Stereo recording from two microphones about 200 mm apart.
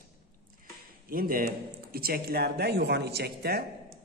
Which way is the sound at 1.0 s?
45° right (ahead or behind).